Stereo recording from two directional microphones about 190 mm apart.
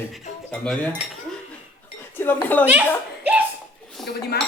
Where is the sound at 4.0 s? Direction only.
Centre (ahead or behind).